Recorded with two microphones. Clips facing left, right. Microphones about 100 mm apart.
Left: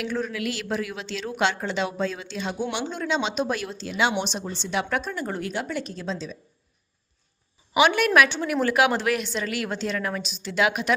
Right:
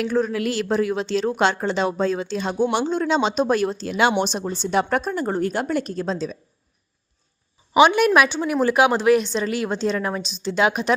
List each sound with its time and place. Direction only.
0.0 s speech: 35° right (ahead or behind)
7.7 s a woman's voice: 20° right (ahead or behind)